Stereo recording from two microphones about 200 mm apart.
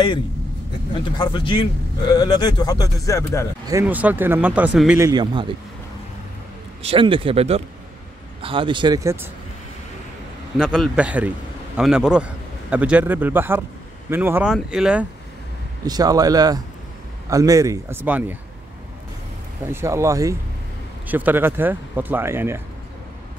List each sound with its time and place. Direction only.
1.1 s speech: 20° left (ahead or behind)
3.6 s speech: 10° right (ahead or behind)
6.8 s speech: 25° right (ahead or behind)
10.6 s a man's voice: centre (ahead or behind)
15.8 s speech: 20° right (ahead or behind)
19.6 s speech: 10° right (ahead or behind)